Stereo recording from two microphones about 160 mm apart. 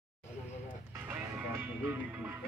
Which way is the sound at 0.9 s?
15° right (ahead or behind).